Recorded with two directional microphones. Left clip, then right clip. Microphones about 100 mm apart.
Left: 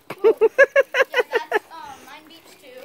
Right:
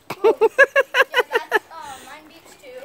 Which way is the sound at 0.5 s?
5° right (ahead or behind).